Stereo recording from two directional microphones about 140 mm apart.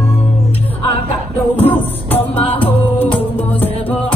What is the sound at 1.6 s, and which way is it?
Music, 15° left (ahead or behind).